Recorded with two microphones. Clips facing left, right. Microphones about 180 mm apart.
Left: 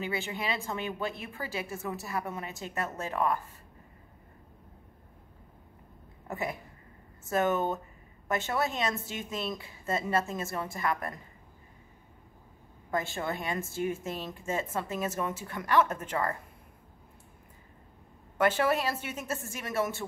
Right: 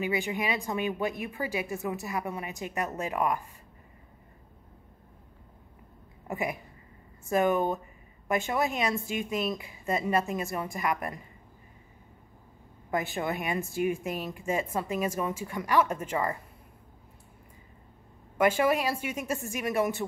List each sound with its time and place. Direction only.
0.0 s speech: 15° right (ahead or behind)
6.2 s speech: 15° right (ahead or behind)
12.9 s speech: 15° right (ahead or behind)
18.4 s speech: 10° right (ahead or behind)